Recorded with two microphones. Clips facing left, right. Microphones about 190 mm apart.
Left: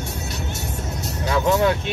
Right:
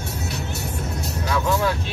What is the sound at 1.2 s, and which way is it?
Speech, 20° left (ahead or behind).